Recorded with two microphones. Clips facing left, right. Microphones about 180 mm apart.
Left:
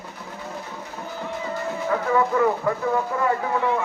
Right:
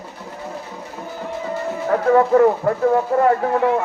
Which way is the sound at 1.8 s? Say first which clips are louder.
Right 7 dB; 45° right (ahead or behind).